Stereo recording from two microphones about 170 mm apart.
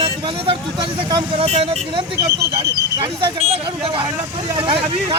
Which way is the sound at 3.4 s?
35° right (ahead or behind).